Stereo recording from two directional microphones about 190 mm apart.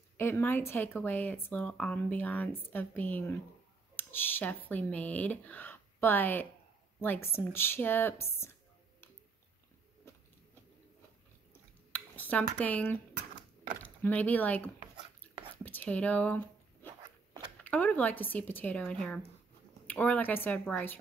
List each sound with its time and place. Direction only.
0.2 s a woman's voice: 10° left (ahead or behind)
11.9 s speech: 10° left (ahead or behind)
17.6 s speech: 10° left (ahead or behind)